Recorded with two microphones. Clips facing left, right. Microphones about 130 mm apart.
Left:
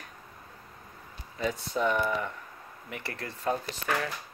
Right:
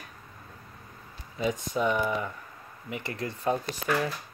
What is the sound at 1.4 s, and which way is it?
Speech, 15° right (ahead or behind).